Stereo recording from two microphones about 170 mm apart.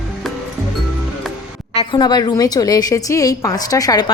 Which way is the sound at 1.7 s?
25° left (ahead or behind).